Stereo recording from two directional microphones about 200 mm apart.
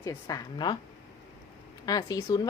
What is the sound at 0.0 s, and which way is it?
Speech, 15° left (ahead or behind).